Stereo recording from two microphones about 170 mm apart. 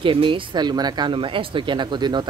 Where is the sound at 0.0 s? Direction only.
30° right (ahead or behind).